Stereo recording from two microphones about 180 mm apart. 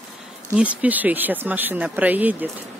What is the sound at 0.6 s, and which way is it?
Speech, 5° right (ahead or behind).